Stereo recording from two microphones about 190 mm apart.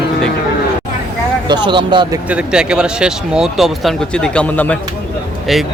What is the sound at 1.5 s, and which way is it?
Speech, 25° right (ahead or behind).